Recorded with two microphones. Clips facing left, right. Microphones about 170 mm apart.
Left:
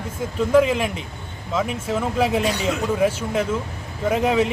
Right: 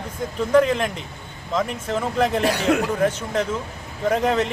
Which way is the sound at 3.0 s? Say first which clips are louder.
Left 1 dB; 10° left (ahead or behind).